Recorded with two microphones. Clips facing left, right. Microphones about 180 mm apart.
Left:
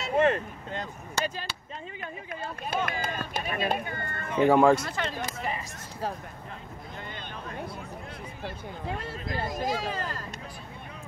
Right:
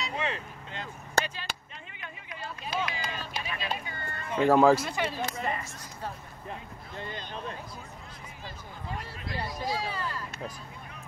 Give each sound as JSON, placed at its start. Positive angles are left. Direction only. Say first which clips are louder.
{"t": 0.0, "sound": "vehicle", "louder": "left 10 dB", "side_deg": 50}
{"t": 2.0, "sound": "run", "louder": "left 4 dB", "side_deg": 50}
{"t": 4.4, "sound": "speech", "louder": "left 1 dB", "side_deg": 0}
{"t": 5.2, "sound": "speech", "louder": "right 1 dB", "side_deg": 10}
{"t": 8.5, "sound": "speech", "louder": "left 5 dB", "side_deg": 55}